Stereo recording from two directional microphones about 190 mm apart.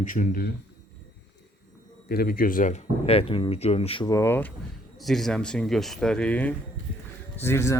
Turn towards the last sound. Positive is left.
turn(degrees=15)  # may be behind; listen again after turning